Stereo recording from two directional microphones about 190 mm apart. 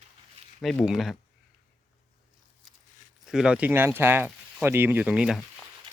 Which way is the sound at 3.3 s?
5° right (ahead or behind).